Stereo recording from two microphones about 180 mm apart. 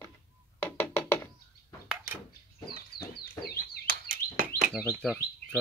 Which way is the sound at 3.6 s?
50° right (ahead or behind).